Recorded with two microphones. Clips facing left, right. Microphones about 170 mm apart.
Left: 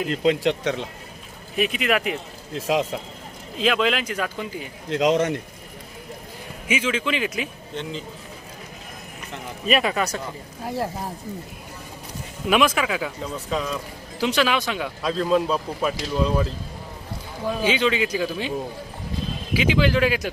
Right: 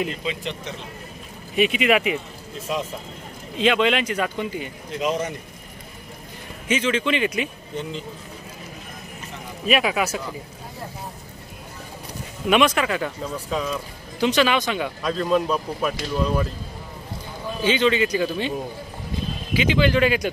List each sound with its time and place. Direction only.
0.2 s speech: 75° left (ahead or behind)
1.6 s speech: centre (ahead or behind)
2.5 s speech: 90° left
3.5 s speech: centre (ahead or behind)
4.8 s speech: 90° left
6.7 s speech: 5° left (ahead or behind)
9.7 s speech: centre (ahead or behind)
12.4 s speech: centre (ahead or behind)
17.6 s speech: 5° left (ahead or behind)
19.5 s speech: 5° left (ahead or behind)